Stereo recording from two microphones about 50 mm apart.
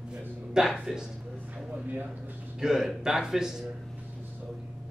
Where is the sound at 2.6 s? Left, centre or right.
Centre.